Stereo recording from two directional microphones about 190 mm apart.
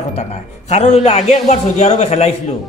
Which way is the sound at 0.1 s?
35° left (ahead or behind).